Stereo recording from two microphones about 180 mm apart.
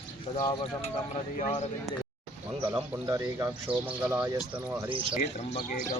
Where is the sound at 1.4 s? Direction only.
40° left (ahead or behind).